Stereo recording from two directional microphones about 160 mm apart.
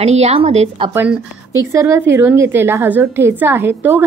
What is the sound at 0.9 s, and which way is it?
A woman's voice, 10° right (ahead or behind).